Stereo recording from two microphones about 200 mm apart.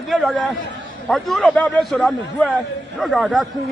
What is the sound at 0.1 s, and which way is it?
A man's voice, centre (ahead or behind).